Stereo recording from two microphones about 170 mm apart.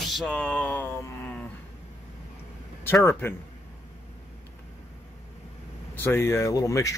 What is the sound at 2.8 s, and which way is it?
Speech, 15° left (ahead or behind).